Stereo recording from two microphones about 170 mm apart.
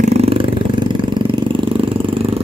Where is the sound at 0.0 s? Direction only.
40° right (ahead or behind).